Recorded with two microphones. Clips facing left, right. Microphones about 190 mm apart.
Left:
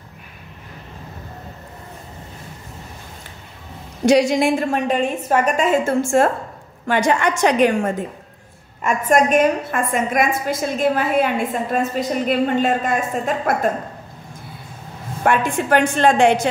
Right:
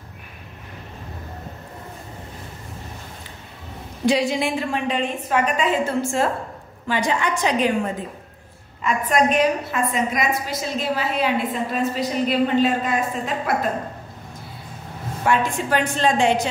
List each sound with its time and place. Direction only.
4.0 s a woman's voice: 85° left
4.4 s a woman's voice: 45° left (ahead or behind); by 7.9 s 60° left (ahead or behind)
8.8 s a woman's voice: 45° left (ahead or behind)
15.2 s a woman's voice: 55° left (ahead or behind)